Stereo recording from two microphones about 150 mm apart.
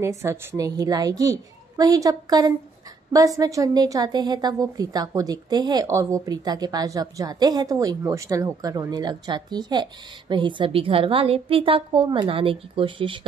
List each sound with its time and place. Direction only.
0.0 s a woman's voice: 20° right (ahead or behind); by 13.2 s 35° right (ahead or behind)